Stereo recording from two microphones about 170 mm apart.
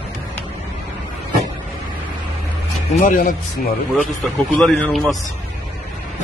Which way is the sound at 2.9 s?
55° left (ahead or behind).